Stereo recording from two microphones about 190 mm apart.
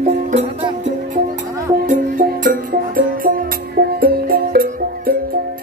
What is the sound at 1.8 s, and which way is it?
Music, 45° right (ahead or behind).